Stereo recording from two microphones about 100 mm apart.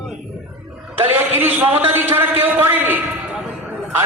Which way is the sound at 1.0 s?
20° right (ahead or behind).